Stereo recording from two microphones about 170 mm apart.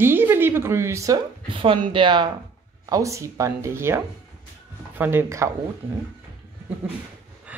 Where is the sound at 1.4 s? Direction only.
30° right (ahead or behind).